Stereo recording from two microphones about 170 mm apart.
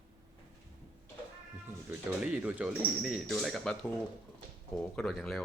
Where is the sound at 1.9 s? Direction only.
5° right (ahead or behind).